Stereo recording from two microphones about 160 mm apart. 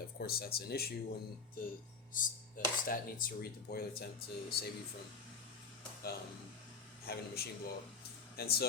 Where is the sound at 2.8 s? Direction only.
60° left (ahead or behind).